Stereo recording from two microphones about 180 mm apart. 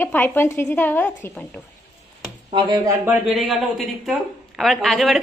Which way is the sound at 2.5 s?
25° right (ahead or behind).